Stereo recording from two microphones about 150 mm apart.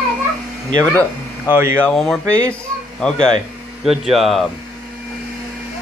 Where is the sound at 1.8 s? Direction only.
5° left (ahead or behind).